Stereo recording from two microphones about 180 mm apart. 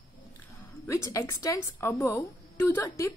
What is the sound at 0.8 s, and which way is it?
A woman's voice, 15° left (ahead or behind).